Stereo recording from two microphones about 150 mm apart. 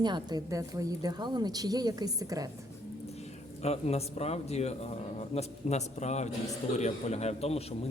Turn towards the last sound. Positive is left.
turn(degrees=45)  # may be behind; listen again after turning